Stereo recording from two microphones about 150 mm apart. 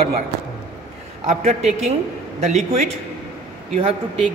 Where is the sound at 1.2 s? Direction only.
45° right (ahead or behind).